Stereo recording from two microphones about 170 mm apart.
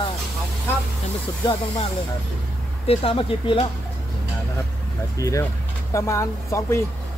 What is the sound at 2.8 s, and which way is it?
Speech, 30° left (ahead or behind).